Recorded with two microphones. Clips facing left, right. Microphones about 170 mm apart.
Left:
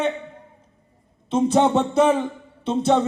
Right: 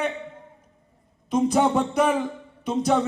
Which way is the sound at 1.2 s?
25° left (ahead or behind).